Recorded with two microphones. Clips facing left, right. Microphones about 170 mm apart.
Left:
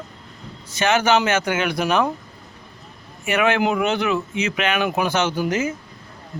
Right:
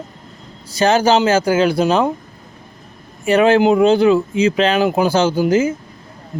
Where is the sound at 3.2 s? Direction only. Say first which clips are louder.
Right 7 dB; 35° right (ahead or behind).